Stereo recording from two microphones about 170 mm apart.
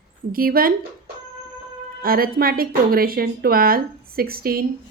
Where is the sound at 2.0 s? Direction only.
60° right (ahead or behind).